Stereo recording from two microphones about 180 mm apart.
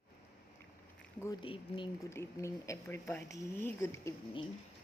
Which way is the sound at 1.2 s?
25° left (ahead or behind).